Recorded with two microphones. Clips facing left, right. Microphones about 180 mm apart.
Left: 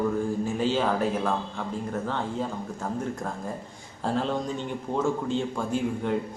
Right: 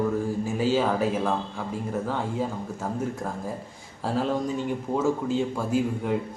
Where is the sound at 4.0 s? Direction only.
5° right (ahead or behind).